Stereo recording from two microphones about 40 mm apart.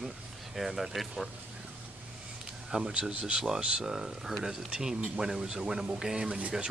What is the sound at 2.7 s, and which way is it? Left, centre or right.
Speech, right.